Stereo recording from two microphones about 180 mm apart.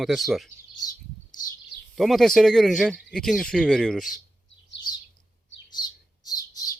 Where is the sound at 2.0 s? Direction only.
Centre (ahead or behind).